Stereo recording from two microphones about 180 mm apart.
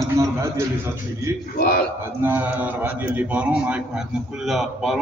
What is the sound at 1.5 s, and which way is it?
Speech, 55° left (ahead or behind).